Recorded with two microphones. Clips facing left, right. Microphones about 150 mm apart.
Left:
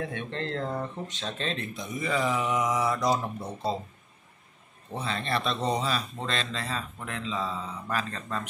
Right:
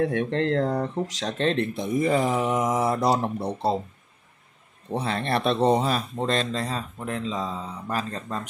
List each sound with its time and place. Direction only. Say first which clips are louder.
0.0 s speech: right 10 dB; 70° right (ahead or behind)
4.9 s speech: right 5 dB; 60° right (ahead or behind)
6.2 s speech: right 7 dB; 45° right (ahead or behind)